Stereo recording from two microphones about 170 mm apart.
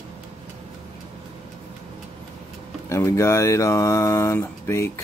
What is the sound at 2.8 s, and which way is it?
Speech, 15° left (ahead or behind).